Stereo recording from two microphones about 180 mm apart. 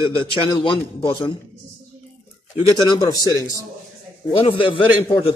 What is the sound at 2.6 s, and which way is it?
Speech, 25° left (ahead or behind).